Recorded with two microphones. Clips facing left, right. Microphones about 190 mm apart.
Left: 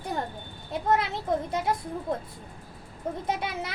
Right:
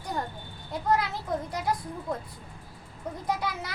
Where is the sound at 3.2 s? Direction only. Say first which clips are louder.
Right 2 dB; 25° left (ahead or behind).